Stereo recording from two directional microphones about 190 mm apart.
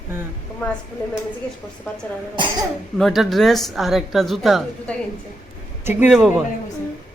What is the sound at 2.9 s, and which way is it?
A woman's voice, centre (ahead or behind).